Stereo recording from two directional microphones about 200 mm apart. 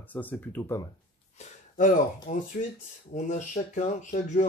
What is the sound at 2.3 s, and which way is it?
Speech, 40° left (ahead or behind).